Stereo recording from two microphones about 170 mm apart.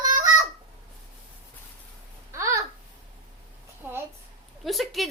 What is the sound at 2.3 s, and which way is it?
Babbling, 15° right (ahead or behind).